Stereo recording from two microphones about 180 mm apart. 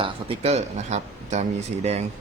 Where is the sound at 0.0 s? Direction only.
35° right (ahead or behind).